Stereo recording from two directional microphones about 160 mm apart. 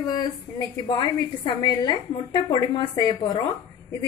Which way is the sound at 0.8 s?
25° left (ahead or behind).